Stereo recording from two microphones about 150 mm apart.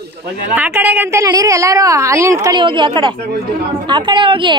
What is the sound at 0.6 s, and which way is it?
A woman's voice, 10° right (ahead or behind).